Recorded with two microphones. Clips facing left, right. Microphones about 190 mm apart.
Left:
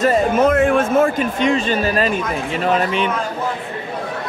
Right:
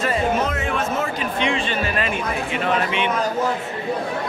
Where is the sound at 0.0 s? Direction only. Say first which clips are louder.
Left 6 dB; 45° left (ahead or behind).